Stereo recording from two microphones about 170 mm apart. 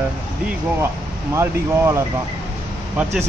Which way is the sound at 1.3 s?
15° right (ahead or behind).